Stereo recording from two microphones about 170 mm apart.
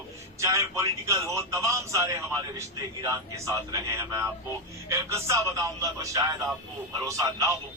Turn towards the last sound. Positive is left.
turn(degrees=-20)  # may be behind; listen again after turning